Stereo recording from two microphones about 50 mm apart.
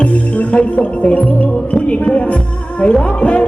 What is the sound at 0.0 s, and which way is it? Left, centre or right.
Music, left.